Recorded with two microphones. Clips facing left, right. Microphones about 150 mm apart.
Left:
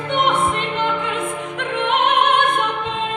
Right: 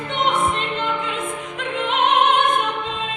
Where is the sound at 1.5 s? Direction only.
60° left (ahead or behind).